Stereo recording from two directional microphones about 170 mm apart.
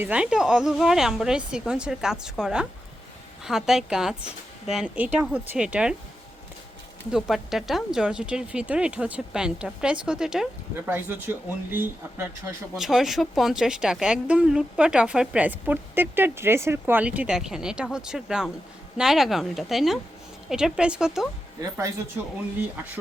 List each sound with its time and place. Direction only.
0.0 s speech: 5° right (ahead or behind)
7.1 s speech: centre (ahead or behind)
12.7 s speech: centre (ahead or behind)
21.6 s speech: 20° right (ahead or behind)